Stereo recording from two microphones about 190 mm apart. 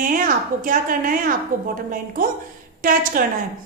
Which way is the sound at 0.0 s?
45° right (ahead or behind).